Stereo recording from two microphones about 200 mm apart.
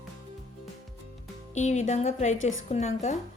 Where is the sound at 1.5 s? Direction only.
35° left (ahead or behind).